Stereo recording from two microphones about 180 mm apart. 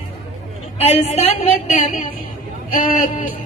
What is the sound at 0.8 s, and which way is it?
A woman's voice, 35° left (ahead or behind).